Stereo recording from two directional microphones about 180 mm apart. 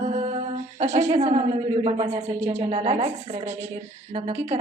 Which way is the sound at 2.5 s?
35° right (ahead or behind).